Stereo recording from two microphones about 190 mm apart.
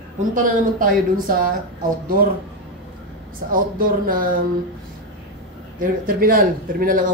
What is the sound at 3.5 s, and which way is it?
Speech, 50° right (ahead or behind).